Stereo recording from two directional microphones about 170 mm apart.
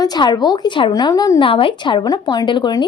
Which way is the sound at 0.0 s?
25° left (ahead or behind).